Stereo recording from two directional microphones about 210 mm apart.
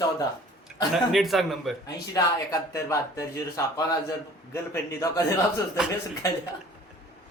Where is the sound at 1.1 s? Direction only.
Centre (ahead or behind).